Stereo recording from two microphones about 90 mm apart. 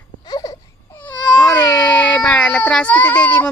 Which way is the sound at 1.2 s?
45° left (ahead or behind).